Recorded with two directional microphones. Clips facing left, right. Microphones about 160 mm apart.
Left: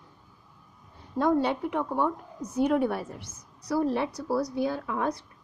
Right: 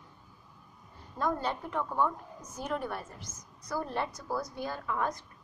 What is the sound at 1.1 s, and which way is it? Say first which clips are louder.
A woman's voice: left 8 dB; 70° left (ahead or behind).